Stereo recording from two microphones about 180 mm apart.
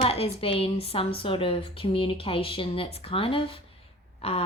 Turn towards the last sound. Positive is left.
turn(degrees=35)  # may be behind; listen again after turning